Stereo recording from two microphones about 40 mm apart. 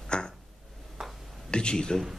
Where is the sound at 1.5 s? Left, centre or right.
Left.